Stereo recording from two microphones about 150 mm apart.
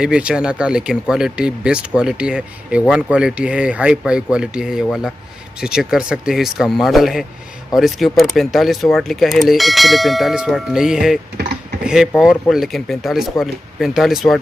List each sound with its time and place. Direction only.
0.0 s speech: 5° right (ahead or behind)